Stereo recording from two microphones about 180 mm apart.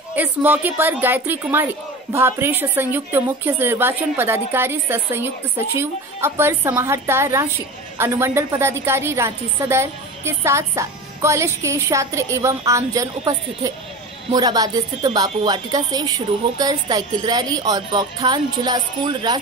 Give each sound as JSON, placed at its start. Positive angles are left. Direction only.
{"t": 0.1, "sound": "a woman's voice", "side_deg": -10}